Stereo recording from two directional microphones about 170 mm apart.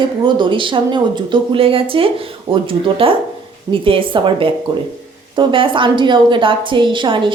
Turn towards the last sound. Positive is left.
turn(degrees=-30)  # may be behind; listen again after turning